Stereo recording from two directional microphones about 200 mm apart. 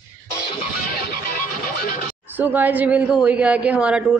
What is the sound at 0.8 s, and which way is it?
Music, 45° left (ahead or behind).